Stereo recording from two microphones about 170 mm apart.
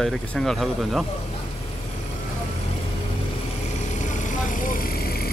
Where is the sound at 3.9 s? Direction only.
45° left (ahead or behind); by 5.3 s 65° left (ahead or behind).